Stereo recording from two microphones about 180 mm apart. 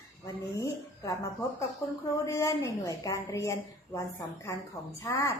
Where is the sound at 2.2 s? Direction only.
15° left (ahead or behind).